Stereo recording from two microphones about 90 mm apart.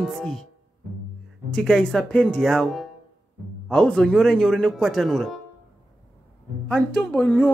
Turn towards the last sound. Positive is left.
turn(degrees=15)  # may be behind; listen again after turning